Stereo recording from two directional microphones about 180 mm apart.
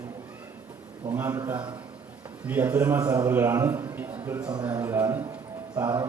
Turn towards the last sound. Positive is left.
turn(degrees=-15)  # may be behind; listen again after turning